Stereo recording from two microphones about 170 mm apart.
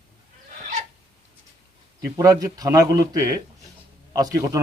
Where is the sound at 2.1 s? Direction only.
20° right (ahead or behind).